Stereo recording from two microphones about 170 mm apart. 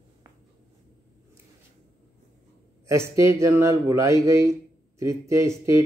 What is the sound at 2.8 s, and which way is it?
Speech, 15° right (ahead or behind).